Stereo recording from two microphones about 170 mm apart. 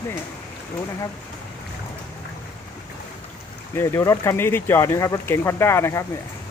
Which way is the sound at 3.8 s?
15° left (ahead or behind).